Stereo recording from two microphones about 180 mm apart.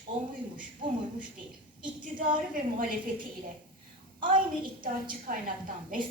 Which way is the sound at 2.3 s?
50° right (ahead or behind).